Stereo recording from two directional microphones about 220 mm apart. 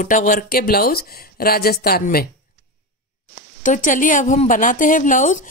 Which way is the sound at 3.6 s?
35° left (ahead or behind).